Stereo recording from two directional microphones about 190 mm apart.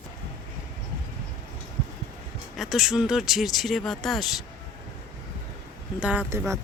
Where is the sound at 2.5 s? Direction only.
Centre (ahead or behind).